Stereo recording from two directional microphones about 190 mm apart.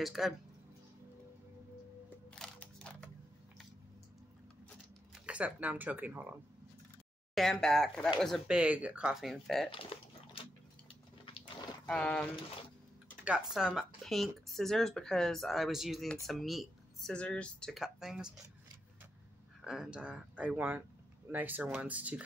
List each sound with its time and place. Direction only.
0.0 s speech: centre (ahead or behind)
2.3 s a sound: 5° left (ahead or behind)
5.2 s speech: 5° right (ahead or behind)
7.3 s speech: 5° left (ahead or behind)
9.7 s a sound: 30° left (ahead or behind)
11.3 s livestock: 25° left (ahead or behind)
11.9 s speech: 5° left (ahead or behind)
13.6 s speech: 5° right (ahead or behind)
19.6 s speech: 5° right (ahead or behind)